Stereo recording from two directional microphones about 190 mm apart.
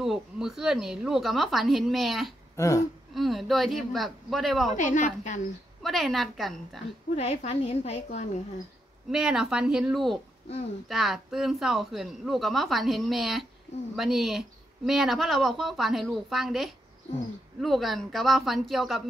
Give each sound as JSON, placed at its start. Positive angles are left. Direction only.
{"t": 0.0, "sound": "speech", "side_deg": 0}
{"t": 2.5, "sound": "throat clearing", "side_deg": 15}
{"t": 3.2, "sound": "speech", "side_deg": 0}
{"t": 4.7, "sound": "a woman's voice", "side_deg": 40}
{"t": 5.8, "sound": "speech", "side_deg": 0}
{"t": 7.2, "sound": "a woman's voice", "side_deg": 35}
{"t": 9.1, "sound": "speech", "side_deg": -5}